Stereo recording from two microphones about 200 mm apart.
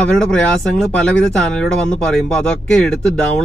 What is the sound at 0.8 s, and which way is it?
Speech, 5° left (ahead or behind).